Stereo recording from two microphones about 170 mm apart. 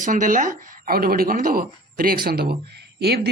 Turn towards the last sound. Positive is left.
turn(degrees=-70)  # may be behind; listen again after turning